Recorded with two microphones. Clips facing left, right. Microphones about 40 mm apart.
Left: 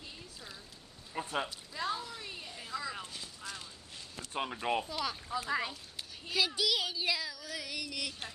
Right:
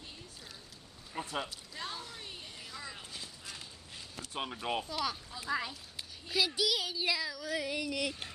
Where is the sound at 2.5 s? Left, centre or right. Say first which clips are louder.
Left 6 dB; left.